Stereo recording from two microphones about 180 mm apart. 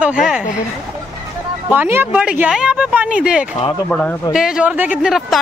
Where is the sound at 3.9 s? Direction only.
5° left (ahead or behind).